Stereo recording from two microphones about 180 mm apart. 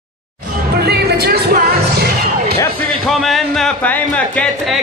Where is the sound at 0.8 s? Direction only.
65° right (ahead or behind).